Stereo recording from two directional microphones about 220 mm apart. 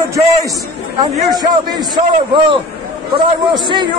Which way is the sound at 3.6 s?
20° right (ahead or behind).